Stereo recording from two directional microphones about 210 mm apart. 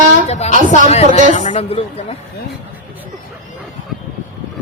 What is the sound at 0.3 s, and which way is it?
Speech, 30° left (ahead or behind).